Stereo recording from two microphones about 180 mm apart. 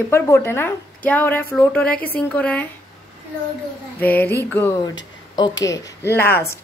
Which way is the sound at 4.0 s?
10° left (ahead or behind).